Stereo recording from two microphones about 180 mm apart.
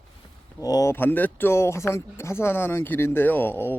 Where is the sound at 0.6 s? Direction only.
20° left (ahead or behind).